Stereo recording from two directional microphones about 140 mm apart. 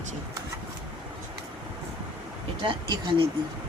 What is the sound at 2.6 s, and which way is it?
Speech, 35° right (ahead or behind).